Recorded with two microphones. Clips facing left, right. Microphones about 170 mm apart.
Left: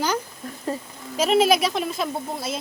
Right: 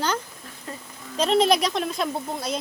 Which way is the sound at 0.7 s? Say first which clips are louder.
Left 9 dB; 35° left (ahead or behind).